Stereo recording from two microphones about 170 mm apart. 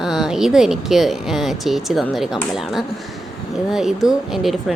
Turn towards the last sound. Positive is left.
turn(degrees=0)  # may be behind; listen again after turning